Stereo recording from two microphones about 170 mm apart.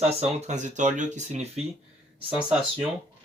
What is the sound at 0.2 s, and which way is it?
Speech, 40° right (ahead or behind).